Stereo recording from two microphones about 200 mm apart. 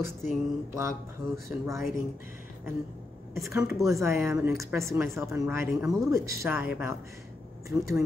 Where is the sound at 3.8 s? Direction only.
15° right (ahead or behind).